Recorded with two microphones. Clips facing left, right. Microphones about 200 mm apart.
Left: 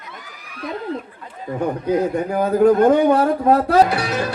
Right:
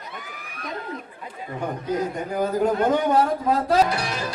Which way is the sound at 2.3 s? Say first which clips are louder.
Left 7 dB; 60° left (ahead or behind).